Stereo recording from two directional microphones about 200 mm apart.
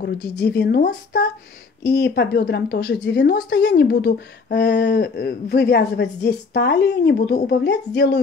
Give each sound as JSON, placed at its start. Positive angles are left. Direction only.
{"t": 0.0, "sound": "speech", "side_deg": 55}